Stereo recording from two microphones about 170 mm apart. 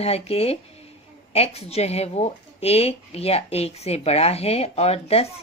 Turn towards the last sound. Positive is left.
turn(degrees=35)  # may be behind; listen again after turning